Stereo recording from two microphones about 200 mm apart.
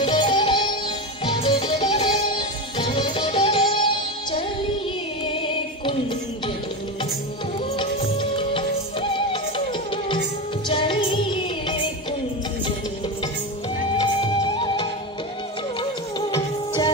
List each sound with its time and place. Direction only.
0.0 s music: 25° left (ahead or behind)
7.7 s music: 25° left (ahead or behind)
14.0 s music: 20° left (ahead or behind)